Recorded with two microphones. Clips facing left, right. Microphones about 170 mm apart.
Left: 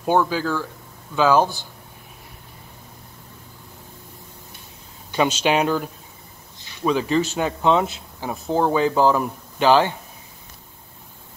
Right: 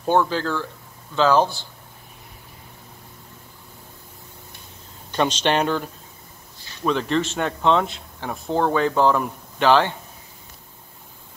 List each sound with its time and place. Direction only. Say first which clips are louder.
0.0 s speech: even; 10° left (ahead or behind)
5.1 s speech: left 1 dB; 5° left (ahead or behind)